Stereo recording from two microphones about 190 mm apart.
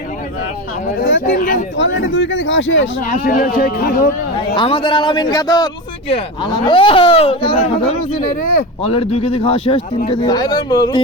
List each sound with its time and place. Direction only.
1.0 s speech: 80° left
1.4 s a sound: 50° left (ahead or behind)
1.7 s speech: 80° left
3.0 s speech: 45° left (ahead or behind)
4.5 s a man's voice: 25° left (ahead or behind)
8.8 s a man's voice: 30° left (ahead or behind)